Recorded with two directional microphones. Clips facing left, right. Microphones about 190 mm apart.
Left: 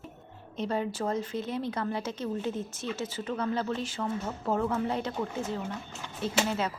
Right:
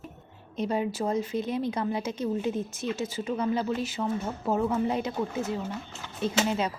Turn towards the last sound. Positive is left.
turn(degrees=-15)  # may be behind; listen again after turning